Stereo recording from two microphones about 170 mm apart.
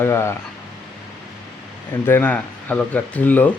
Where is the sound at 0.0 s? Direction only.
15° left (ahead or behind).